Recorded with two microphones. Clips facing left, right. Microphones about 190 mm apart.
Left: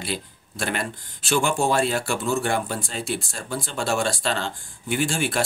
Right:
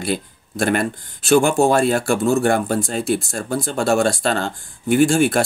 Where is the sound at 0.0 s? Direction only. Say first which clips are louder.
Right 7 dB; 50° right (ahead or behind).